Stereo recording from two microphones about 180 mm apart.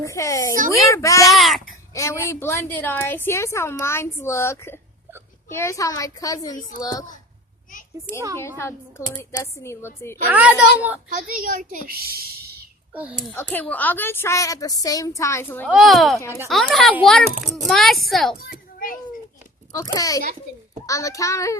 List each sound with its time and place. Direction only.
0.0 s a woman's voice: 15° left (ahead or behind)
1.3 s babbling: centre (ahead or behind)
1.9 s a woman's voice: 15° left (ahead or behind)
6.6 s a woman's voice: 45° left (ahead or behind)
8.4 s a woman's voice: 15° left (ahead or behind)
10.2 s a child's voice: 10° right (ahead or behind)
11.3 s a woman's voice: 50° right (ahead or behind)
12.9 s a child's voice: 10° right (ahead or behind)
13.3 s a woman's voice: 10° left (ahead or behind)
15.7 s a child's voice: centre (ahead or behind)
19.7 s a woman's voice: 20° left (ahead or behind)